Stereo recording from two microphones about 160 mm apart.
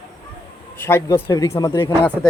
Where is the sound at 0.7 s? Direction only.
15° left (ahead or behind).